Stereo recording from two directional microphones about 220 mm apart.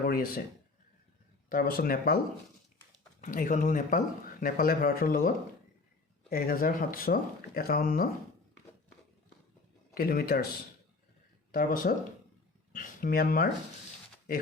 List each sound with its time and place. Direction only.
0.0 s speech: 40° left (ahead or behind)
1.5 s speech: 40° left (ahead or behind)
3.2 s speech: 35° left (ahead or behind)
6.3 s speech: 40° left (ahead or behind)
9.9 s speech: 40° left (ahead or behind)
11.5 s speech: 40° left (ahead or behind)